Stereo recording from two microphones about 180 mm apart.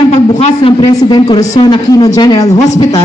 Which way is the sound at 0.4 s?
35° left (ahead or behind).